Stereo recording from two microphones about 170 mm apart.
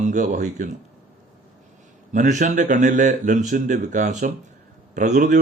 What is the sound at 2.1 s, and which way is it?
Speech, 45° right (ahead or behind).